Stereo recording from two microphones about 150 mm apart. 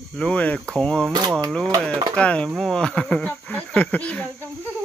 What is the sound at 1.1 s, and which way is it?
Speech, 30° right (ahead or behind).